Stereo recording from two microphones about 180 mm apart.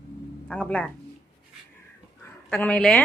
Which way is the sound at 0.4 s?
5° left (ahead or behind).